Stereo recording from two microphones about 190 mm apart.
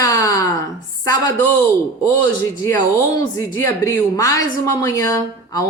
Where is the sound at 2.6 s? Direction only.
15° left (ahead or behind).